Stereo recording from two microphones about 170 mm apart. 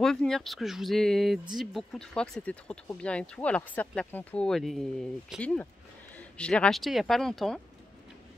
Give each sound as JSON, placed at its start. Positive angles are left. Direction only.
{"t": 0.0, "sound": "speech", "side_deg": 5}